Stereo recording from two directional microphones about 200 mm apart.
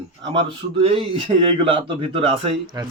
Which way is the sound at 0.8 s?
30° right (ahead or behind).